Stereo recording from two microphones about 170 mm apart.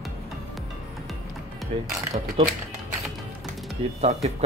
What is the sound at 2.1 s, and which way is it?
Speech, 40° right (ahead or behind).